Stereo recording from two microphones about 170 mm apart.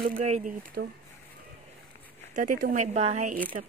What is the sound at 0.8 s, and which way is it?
Speech, 70° right (ahead or behind).